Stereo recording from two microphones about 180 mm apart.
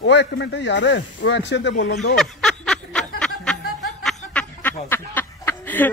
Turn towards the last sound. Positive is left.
turn(degrees=10)  # may be behind; listen again after turning